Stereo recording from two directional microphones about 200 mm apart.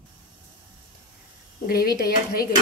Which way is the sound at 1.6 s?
50° left (ahead or behind).